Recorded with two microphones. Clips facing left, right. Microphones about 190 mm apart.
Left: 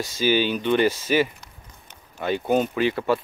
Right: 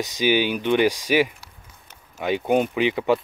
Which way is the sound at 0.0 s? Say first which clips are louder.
Right 1 dB; 15° right (ahead or behind).